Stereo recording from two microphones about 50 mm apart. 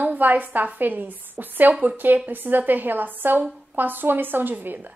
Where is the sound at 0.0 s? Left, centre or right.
Right.